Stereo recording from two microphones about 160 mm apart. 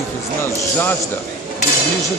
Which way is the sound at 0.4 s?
15° left (ahead or behind).